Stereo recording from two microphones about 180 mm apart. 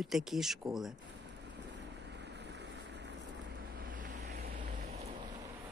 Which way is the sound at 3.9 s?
55° right (ahead or behind).